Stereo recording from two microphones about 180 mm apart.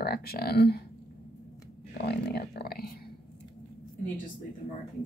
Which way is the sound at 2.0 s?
65° left (ahead or behind).